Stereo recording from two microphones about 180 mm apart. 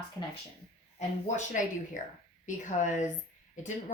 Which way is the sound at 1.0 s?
40° left (ahead or behind).